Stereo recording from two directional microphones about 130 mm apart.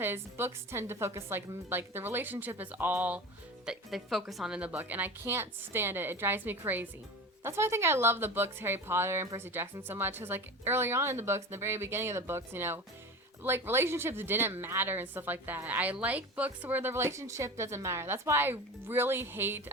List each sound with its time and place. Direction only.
0.0 s speech: 20° right (ahead or behind)
3.7 s speech: centre (ahead or behind); by 19.7 s 15° right (ahead or behind)